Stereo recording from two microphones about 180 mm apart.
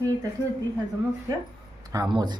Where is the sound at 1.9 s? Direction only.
20° right (ahead or behind).